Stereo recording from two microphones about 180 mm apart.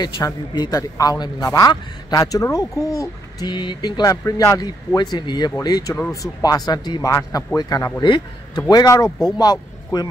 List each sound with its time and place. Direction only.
0.0 s a man's voice: 25° left (ahead or behind)